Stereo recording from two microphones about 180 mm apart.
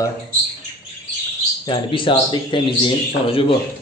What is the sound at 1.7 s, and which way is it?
Speech, 30° left (ahead or behind).